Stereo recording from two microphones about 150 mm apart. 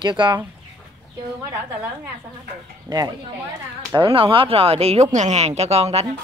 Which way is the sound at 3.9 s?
35° right (ahead or behind).